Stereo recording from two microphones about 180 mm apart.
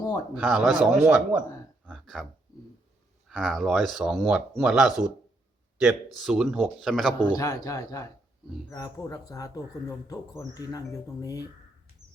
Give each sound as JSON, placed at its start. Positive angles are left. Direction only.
{"t": 0.3, "sound": "speech", "side_deg": 0}
{"t": 1.9, "sound": "a sound", "side_deg": 0}
{"t": 3.2, "sound": "speech", "side_deg": 0}
{"t": 6.1, "sound": "speech", "side_deg": 0}
{"t": 7.2, "sound": "speech", "side_deg": 20}